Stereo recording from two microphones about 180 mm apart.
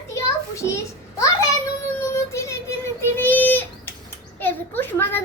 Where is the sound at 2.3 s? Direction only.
15° left (ahead or behind).